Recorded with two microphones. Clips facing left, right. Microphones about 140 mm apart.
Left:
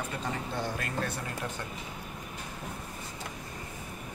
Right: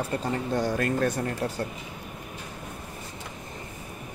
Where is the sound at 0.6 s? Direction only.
50° right (ahead or behind).